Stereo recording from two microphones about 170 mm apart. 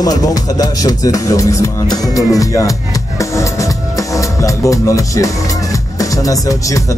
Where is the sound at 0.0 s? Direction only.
20° left (ahead or behind).